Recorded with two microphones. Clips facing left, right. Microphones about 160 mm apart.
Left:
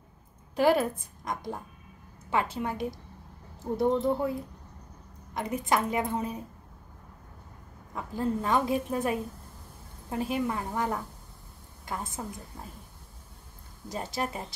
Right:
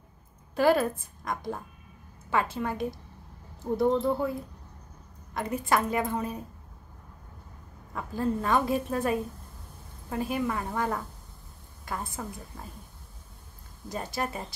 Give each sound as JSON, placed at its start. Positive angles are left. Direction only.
{"t": 0.6, "sound": "a woman's voice", "side_deg": 20}
{"t": 7.9, "sound": "a woman's voice", "side_deg": 15}
{"t": 13.9, "sound": "a woman's voice", "side_deg": 20}